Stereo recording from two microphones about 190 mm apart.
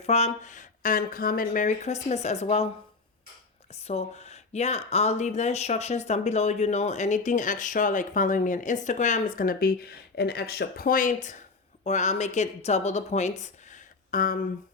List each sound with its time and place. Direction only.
0.0 s speech: 35° left (ahead or behind)
3.8 s speech: 35° left (ahead or behind)